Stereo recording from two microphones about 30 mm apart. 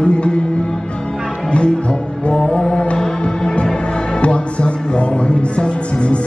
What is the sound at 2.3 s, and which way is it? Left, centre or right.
Music, left.